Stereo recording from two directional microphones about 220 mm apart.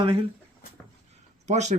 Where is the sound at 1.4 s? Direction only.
30° right (ahead or behind).